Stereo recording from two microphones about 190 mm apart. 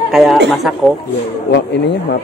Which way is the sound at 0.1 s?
Centre (ahead or behind).